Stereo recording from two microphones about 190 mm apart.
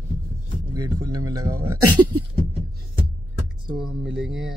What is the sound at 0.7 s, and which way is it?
Speech, 15° right (ahead or behind).